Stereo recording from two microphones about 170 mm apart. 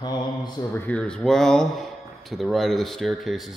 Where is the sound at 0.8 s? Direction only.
5° left (ahead or behind).